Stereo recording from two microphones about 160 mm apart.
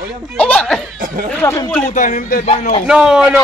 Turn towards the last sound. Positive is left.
turn(degrees=-5)  # may be behind; listen again after turning